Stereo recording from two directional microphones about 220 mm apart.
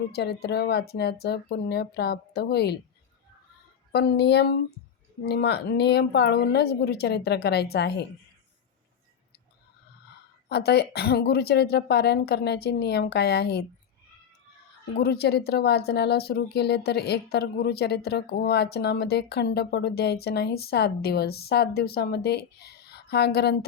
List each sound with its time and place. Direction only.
0.1 s a woman's voice: 45° left (ahead or behind)
3.9 s a woman's voice: 45° left (ahead or behind)
10.5 s a woman's voice: 45° left (ahead or behind)
14.9 s a woman's voice: 45° left (ahead or behind)